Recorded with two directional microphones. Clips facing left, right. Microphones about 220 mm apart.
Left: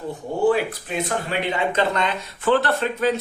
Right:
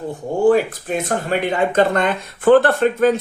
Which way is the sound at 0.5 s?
45° right (ahead or behind).